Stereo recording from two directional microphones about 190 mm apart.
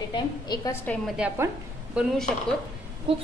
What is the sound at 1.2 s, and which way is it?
A woman's voice, 5° right (ahead or behind).